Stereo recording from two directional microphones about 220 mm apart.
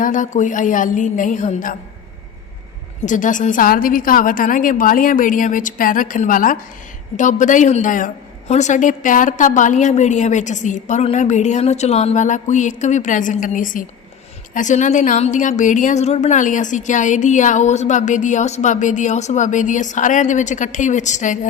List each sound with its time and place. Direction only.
0.0 s a woman's voice: 35° left (ahead or behind)
3.1 s a woman's voice: 35° left (ahead or behind)